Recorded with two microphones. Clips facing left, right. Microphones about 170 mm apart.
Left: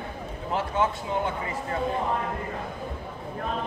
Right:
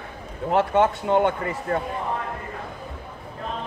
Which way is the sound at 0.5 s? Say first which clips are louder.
Right 7 dB; 70° right (ahead or behind).